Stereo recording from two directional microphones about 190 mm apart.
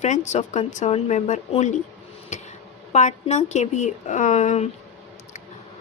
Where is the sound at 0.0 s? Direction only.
40° left (ahead or behind).